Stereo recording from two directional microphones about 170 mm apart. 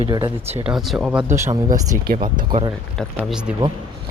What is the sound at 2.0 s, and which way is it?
Speech, 60° right (ahead or behind).